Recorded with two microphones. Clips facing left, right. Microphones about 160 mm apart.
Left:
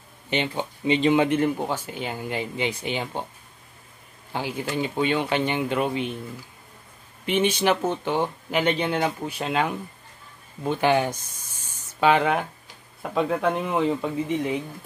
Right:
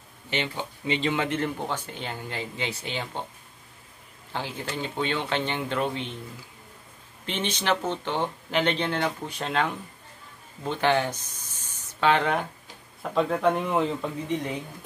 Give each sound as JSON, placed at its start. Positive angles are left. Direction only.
{"t": 0.3, "sound": "speech", "side_deg": 20}
{"t": 4.3, "sound": "speech", "side_deg": 10}
{"t": 7.2, "sound": "speech", "side_deg": 10}